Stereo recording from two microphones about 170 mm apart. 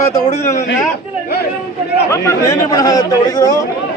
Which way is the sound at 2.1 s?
15° left (ahead or behind).